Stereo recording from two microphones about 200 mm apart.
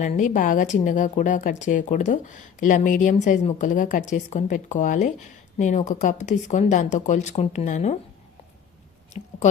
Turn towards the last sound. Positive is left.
turn(degrees=35)  # may be behind; listen again after turning